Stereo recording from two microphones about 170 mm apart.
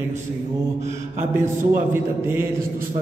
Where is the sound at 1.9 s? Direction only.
15° right (ahead or behind).